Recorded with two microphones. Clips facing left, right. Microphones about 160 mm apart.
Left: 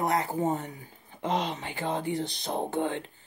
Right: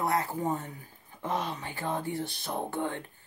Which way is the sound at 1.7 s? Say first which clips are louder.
Left 3 dB; 20° left (ahead or behind).